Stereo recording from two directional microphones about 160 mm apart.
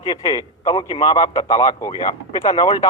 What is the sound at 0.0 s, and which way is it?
A man's voice, 30° left (ahead or behind).